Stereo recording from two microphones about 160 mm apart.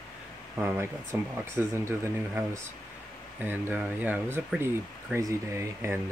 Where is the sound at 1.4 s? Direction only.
15° right (ahead or behind).